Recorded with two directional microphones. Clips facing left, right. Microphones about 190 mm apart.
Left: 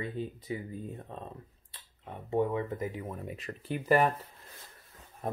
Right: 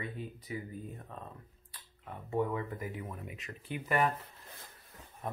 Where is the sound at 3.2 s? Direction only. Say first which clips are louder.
Left 6 dB; 35° left (ahead or behind).